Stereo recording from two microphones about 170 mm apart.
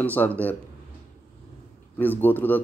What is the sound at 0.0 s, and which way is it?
Speech, 10° left (ahead or behind).